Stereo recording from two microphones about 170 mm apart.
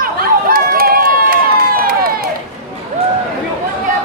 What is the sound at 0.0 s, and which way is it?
Run, 60° right (ahead or behind).